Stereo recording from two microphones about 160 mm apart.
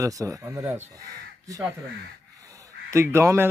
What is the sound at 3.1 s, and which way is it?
Speech, 15° right (ahead or behind).